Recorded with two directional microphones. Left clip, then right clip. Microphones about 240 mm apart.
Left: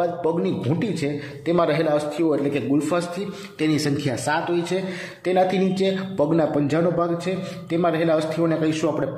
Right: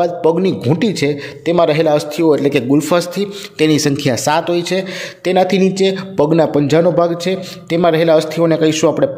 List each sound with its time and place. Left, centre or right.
0.0 s a man's voice: right
1.5 s a man's voice: right